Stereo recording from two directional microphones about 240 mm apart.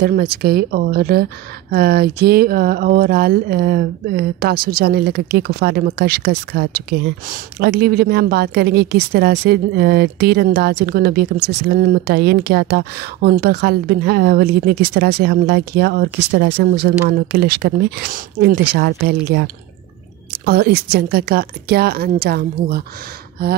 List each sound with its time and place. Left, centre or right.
0.0 s speech: right